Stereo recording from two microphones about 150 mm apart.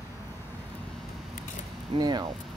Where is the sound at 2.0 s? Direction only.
30° right (ahead or behind).